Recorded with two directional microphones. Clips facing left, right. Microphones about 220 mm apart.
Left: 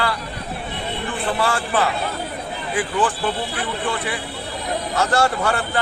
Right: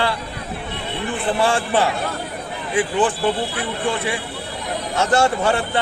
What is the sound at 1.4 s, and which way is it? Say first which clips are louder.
A man's voice: right 3 dB; 25° right (ahead or behind).